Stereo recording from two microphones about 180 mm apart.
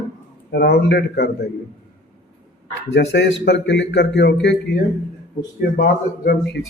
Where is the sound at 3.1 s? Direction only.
70° left (ahead or behind).